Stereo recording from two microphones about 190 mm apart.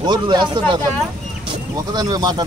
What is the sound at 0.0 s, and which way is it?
Speech, 25° right (ahead or behind).